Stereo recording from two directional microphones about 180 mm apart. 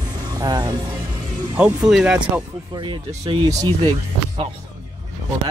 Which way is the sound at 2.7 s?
25° right (ahead or behind).